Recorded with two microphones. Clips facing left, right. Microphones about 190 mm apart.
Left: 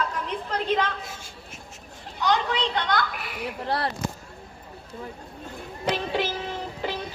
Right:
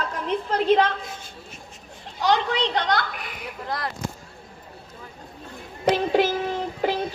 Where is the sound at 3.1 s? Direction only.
5° left (ahead or behind).